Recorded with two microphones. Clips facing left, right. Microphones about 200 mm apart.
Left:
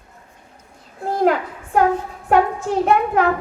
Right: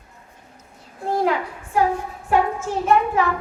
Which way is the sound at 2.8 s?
60° left (ahead or behind).